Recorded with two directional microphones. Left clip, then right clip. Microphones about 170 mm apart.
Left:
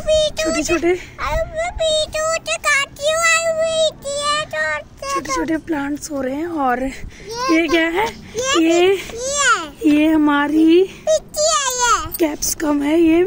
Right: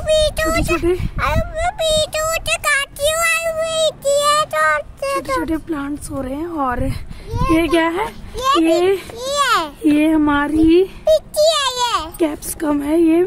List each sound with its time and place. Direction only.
0.0 s a sound: 55° right (ahead or behind)
1.1 s a sound: 65° right (ahead or behind)
5.4 s speech: centre (ahead or behind)
8.4 s a child's voice: 35° right (ahead or behind)
8.6 s a child's voice: 10° left (ahead or behind)
9.1 s babbling: 35° right (ahead or behind)
9.8 s speech: centre (ahead or behind)
11.1 s a sound: 40° right (ahead or behind)
12.2 s speech: 5° left (ahead or behind)